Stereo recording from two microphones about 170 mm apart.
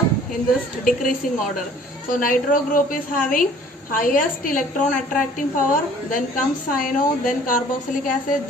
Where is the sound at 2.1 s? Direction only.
55° left (ahead or behind).